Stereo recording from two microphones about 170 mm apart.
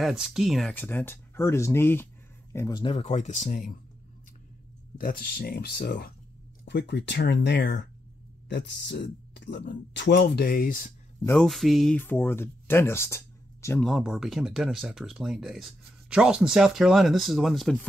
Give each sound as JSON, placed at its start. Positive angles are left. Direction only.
{"t": 0.0, "sound": "speech", "side_deg": -5}
{"t": 2.8, "sound": "speech", "side_deg": 35}
{"t": 4.9, "sound": "speech", "side_deg": 60}
{"t": 6.7, "sound": "speech", "side_deg": 90}
{"t": 11.2, "sound": "speech", "side_deg": 5}
{"t": 12.0, "sound": "speech", "side_deg": 10}
{"t": 13.8, "sound": "speech", "side_deg": 0}